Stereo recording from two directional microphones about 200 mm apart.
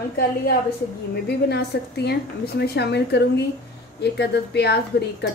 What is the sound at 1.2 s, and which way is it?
A woman's voice, 55° left (ahead or behind).